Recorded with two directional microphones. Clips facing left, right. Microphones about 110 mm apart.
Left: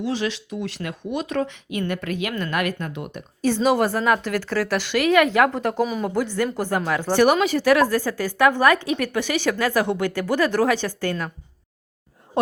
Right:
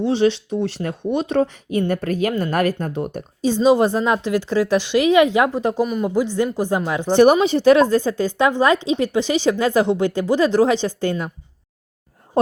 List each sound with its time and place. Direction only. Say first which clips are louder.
0.0 s speech: right 8 dB; 30° right (ahead or behind)
3.4 s a woman's voice: right 4 dB; 20° right (ahead or behind)
5.8 s speech: right 1 dB; centre (ahead or behind)
6.1 s a woman's voice: right 4 dB; 15° right (ahead or behind)